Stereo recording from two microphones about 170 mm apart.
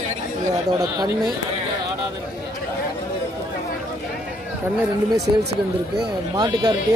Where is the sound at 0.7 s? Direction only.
20° right (ahead or behind).